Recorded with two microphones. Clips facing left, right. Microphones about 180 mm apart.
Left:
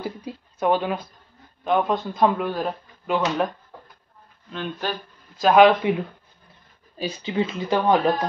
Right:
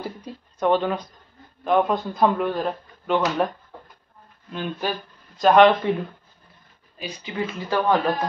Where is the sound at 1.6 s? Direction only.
Centre (ahead or behind).